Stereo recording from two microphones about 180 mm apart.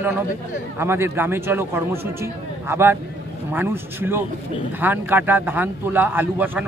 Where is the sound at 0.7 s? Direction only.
15° right (ahead or behind).